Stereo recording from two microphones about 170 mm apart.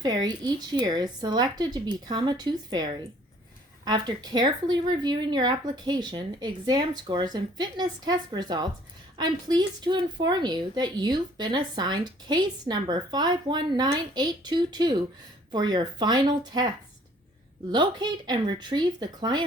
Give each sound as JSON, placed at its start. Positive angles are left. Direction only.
{"t": 0.0, "sound": "a woman's voice", "side_deg": -25}